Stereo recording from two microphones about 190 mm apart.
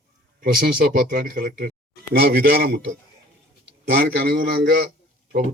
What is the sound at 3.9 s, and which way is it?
Speech, 50° right (ahead or behind).